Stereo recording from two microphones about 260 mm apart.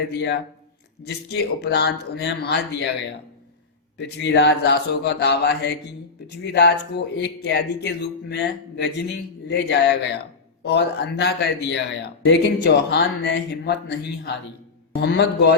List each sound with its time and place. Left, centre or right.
0.1 s speech: left
15.0 s speech: left